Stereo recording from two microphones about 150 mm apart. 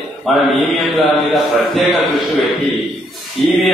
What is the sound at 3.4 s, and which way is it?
Speech, centre (ahead or behind).